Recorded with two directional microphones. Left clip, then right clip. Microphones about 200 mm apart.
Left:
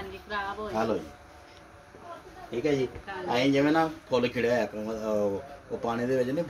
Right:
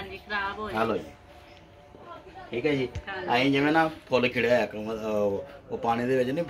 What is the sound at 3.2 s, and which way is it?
Speech, centre (ahead or behind).